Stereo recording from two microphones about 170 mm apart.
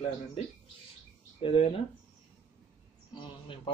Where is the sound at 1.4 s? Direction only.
35° left (ahead or behind).